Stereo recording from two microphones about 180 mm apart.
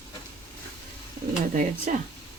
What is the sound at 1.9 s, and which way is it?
Speech, 45° right (ahead or behind).